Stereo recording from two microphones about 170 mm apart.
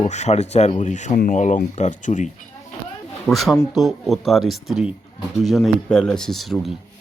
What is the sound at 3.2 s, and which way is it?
Speech, centre (ahead or behind).